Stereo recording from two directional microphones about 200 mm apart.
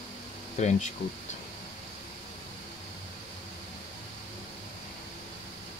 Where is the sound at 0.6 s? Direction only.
35° left (ahead or behind).